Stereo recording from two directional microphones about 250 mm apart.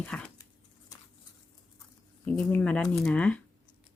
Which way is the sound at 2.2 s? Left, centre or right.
Centre.